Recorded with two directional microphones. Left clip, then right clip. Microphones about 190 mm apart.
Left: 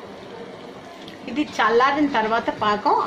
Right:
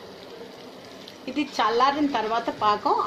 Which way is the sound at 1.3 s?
20° right (ahead or behind).